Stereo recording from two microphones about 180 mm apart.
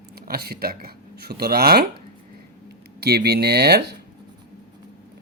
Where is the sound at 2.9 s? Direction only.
65° right (ahead or behind).